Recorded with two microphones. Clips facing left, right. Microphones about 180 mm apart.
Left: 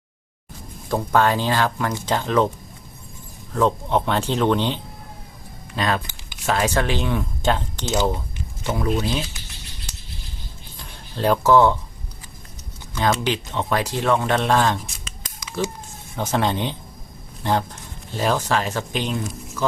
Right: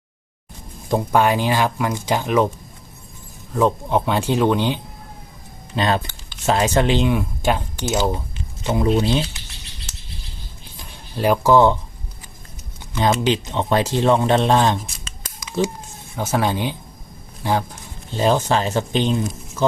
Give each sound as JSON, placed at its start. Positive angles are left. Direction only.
{"t": 0.9, "sound": "speech", "side_deg": -15}
{"t": 3.5, "sound": "speech", "side_deg": -10}
{"t": 5.7, "sound": "speech", "side_deg": -25}
{"t": 10.8, "sound": "music", "side_deg": -10}
{"t": 13.0, "sound": "speech", "side_deg": -20}
{"t": 16.1, "sound": "speech", "side_deg": -10}
{"t": 18.1, "sound": "speech", "side_deg": -25}